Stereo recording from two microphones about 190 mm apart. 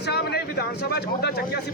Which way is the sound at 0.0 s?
60° left (ahead or behind).